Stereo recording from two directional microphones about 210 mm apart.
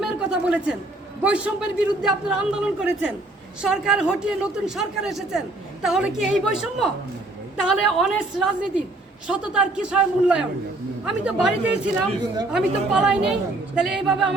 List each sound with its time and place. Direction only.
0.0 s a man's voice: 5° right (ahead or behind)